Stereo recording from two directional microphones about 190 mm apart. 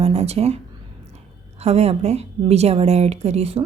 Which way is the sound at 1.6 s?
35° right (ahead or behind).